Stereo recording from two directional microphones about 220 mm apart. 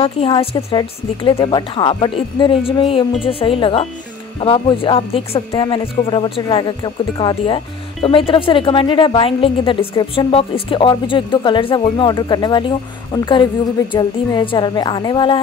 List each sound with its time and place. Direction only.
0.0 s speech: 25° left (ahead or behind)